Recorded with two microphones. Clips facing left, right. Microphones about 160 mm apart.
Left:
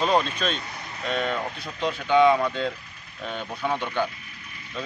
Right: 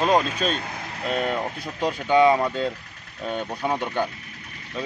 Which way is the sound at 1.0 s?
5° right (ahead or behind).